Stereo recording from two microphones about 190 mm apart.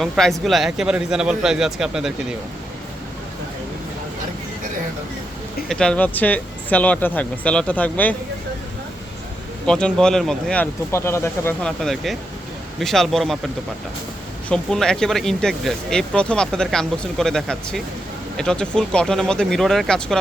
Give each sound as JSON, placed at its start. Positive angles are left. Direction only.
{"t": 0.0, "sound": "speech", "side_deg": 0}
{"t": 5.6, "sound": "speech", "side_deg": 5}
{"t": 9.6, "sound": "speech", "side_deg": 5}
{"t": 14.5, "sound": "speech", "side_deg": 5}